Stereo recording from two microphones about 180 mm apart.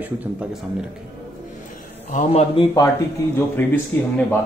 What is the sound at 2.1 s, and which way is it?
Speech, 30° left (ahead or behind).